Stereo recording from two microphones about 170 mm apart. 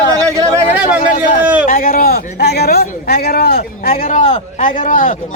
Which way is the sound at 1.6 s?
55° left (ahead or behind).